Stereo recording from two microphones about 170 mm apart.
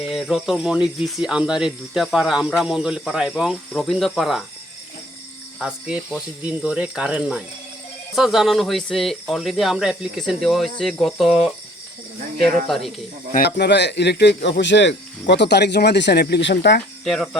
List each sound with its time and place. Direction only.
0.0 s speech: centre (ahead or behind)
5.5 s speech: 5° right (ahead or behind)
12.6 s speech: centre (ahead or behind)
13.6 s speech: 90° left
17.0 s speech: centre (ahead or behind)